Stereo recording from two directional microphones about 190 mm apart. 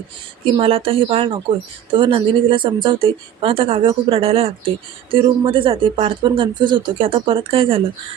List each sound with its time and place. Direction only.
0.5 s speech: 30° right (ahead or behind)